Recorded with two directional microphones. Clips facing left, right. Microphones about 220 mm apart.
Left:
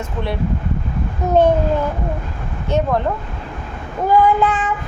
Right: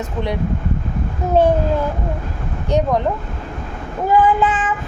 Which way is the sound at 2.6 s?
15° right (ahead or behind).